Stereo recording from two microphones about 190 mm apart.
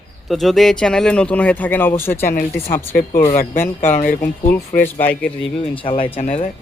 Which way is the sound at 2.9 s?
40° left (ahead or behind).